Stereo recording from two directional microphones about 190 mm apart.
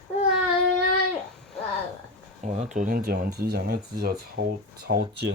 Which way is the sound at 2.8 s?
45° right (ahead or behind).